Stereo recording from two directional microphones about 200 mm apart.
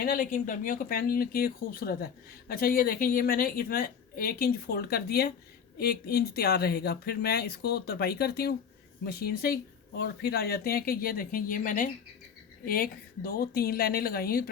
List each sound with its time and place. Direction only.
0.0 s a woman's voice: 45° left (ahead or behind)